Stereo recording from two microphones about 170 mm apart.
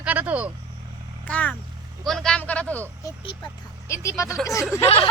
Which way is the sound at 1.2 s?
5° left (ahead or behind).